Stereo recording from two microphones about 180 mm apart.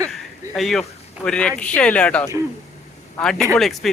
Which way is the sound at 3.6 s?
Centre (ahead or behind).